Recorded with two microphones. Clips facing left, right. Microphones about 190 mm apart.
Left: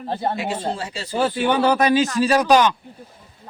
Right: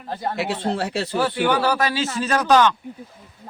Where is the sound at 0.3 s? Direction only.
70° right (ahead or behind).